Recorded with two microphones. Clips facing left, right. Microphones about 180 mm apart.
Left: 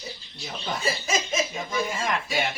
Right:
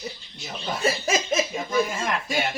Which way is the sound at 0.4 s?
5° right (ahead or behind).